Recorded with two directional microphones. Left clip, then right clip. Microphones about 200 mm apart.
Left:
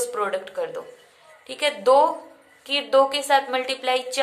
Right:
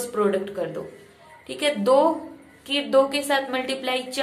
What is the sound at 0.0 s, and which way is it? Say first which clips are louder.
A woman's voice: right 2 dB; 20° left (ahead or behind).